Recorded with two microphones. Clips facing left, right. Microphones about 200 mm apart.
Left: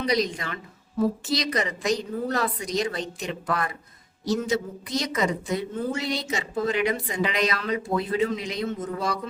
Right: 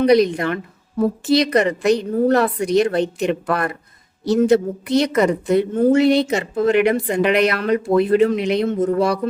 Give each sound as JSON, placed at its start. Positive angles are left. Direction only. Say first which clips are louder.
{"t": 0.0, "sound": "a woman's voice", "louder": "right 11 dB", "side_deg": -60}